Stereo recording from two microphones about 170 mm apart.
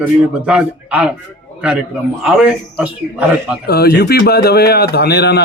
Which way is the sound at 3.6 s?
70° left (ahead or behind).